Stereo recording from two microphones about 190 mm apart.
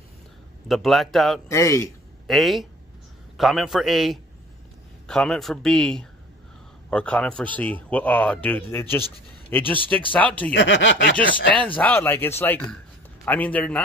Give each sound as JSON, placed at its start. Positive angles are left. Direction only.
{"t": 0.7, "sound": "speech", "side_deg": 0}
{"t": 1.5, "sound": "speech", "side_deg": 15}
{"t": 2.2, "sound": "speech", "side_deg": 0}
{"t": 10.5, "sound": "speech", "side_deg": 75}
{"t": 11.1, "sound": "speech", "side_deg": 5}